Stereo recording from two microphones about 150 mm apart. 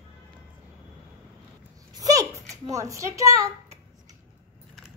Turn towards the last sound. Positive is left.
turn(degrees=-20)  # may be behind; listen again after turning